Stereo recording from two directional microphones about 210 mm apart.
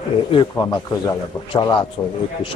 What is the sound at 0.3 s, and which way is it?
A man's voice, 20° left (ahead or behind).